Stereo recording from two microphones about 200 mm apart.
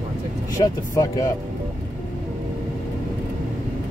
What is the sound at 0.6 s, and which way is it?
Speech, 15° left (ahead or behind).